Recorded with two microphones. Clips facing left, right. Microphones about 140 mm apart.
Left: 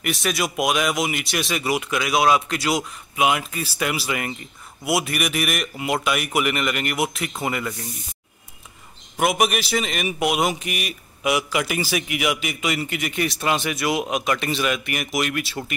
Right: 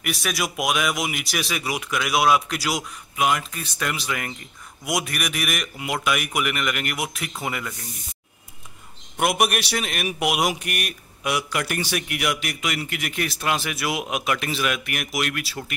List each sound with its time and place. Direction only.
0.0 s a man's voice: centre (ahead or behind)
9.1 s a man's voice: centre (ahead or behind)